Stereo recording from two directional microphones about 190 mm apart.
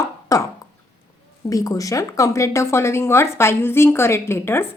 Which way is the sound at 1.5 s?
20° left (ahead or behind).